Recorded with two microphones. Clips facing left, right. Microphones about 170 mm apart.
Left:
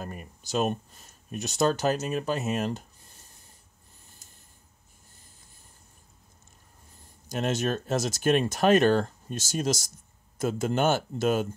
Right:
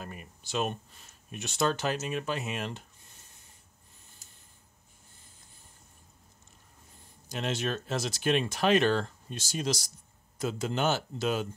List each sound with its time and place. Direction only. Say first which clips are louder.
0.0 s speech: left 4 dB; 40° left (ahead or behind)
7.2 s speech: left 5 dB; 45° left (ahead or behind)